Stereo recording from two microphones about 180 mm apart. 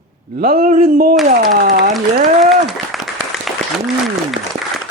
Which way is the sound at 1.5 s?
50° right (ahead or behind).